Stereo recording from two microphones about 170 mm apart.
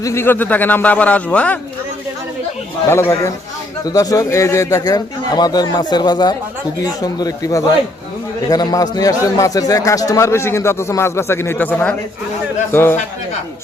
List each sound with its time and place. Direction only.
0.0 s a man's voice: 15° left (ahead or behind)
2.9 s a man's voice: 15° left (ahead or behind)